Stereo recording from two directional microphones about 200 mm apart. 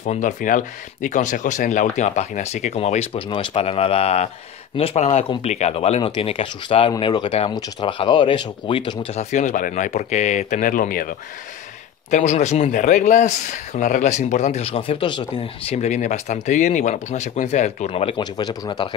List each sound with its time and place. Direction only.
0.0 s speech: 40° left (ahead or behind); by 18.9 s 25° left (ahead or behind)